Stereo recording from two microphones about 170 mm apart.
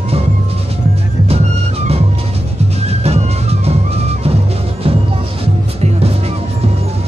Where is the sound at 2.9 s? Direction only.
40° right (ahead or behind).